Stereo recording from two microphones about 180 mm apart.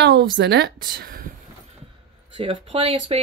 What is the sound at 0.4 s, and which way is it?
Speech, 70° right (ahead or behind).